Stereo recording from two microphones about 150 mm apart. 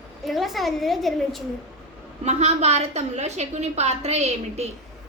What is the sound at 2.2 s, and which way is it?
A woman's voice, 45° right (ahead or behind).